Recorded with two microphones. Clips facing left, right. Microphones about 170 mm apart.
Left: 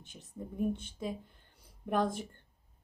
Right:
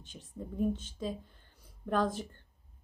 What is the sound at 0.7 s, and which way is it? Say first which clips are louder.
Speech: right 1 dB; 60° left (ahead or behind).